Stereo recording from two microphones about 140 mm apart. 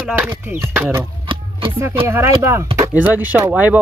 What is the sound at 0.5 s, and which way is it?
Speech, 10° right (ahead or behind).